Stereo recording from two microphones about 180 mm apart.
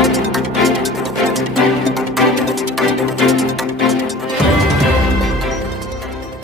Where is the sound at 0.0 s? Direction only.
Centre (ahead or behind).